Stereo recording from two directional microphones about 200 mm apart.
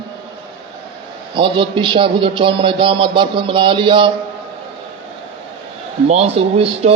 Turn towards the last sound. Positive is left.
turn(degrees=-30)  # may be behind; listen again after turning